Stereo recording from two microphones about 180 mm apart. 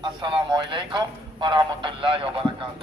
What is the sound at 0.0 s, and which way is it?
Speech, 25° right (ahead or behind).